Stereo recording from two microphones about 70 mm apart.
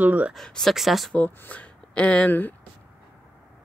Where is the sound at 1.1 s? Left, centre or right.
Left.